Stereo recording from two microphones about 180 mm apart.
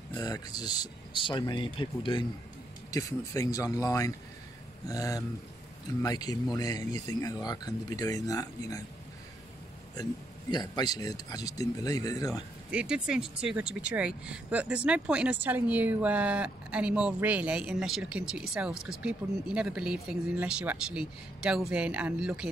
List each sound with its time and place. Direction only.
0.1 s speech: 20° left (ahead or behind)
10.5 s speech: 25° left (ahead or behind)
12.7 s speech: 5° right (ahead or behind)